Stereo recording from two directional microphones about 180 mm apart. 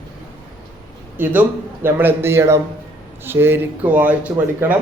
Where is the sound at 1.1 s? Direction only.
10° right (ahead or behind).